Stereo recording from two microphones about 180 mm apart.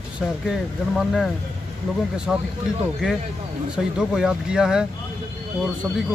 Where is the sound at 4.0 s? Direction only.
5° right (ahead or behind).